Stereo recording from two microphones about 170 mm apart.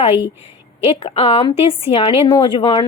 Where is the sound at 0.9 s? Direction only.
35° left (ahead or behind).